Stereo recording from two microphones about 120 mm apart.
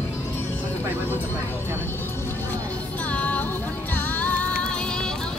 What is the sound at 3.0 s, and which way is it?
Music, 10° left (ahead or behind).